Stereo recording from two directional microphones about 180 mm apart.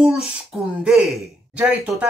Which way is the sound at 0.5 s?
5° right (ahead or behind).